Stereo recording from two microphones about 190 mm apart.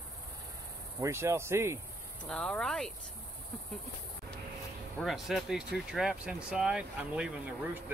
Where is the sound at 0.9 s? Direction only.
15° right (ahead or behind).